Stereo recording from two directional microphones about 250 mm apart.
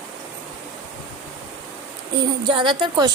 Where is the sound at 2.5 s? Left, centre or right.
Centre.